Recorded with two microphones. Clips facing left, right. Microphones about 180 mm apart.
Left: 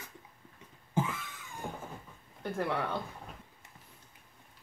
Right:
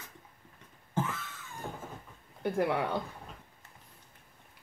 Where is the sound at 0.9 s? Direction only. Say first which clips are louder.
Left 1 dB; 15° left (ahead or behind).